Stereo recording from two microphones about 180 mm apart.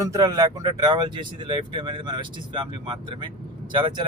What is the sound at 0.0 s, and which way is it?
Speech, 20° right (ahead or behind).